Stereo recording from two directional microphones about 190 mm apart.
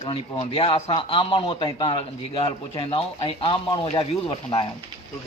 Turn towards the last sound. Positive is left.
turn(degrees=25)  # may be behind; listen again after turning